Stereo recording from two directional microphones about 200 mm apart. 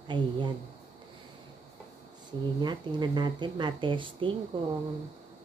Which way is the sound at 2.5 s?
20° right (ahead or behind).